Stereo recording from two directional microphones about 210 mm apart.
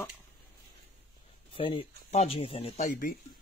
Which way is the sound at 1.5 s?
25° left (ahead or behind).